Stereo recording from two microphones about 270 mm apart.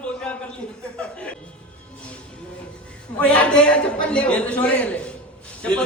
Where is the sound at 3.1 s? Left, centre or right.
Centre.